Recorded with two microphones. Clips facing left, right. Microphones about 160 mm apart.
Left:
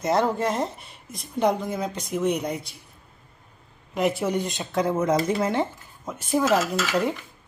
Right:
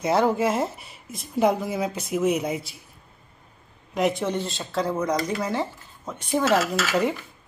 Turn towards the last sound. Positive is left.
turn(degrees=0)  # may be behind; listen again after turning